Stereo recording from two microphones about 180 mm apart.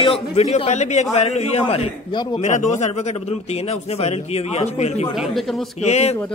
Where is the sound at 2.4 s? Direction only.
40° left (ahead or behind).